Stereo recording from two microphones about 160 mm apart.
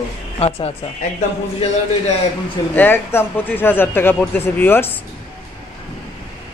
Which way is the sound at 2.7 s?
15° left (ahead or behind).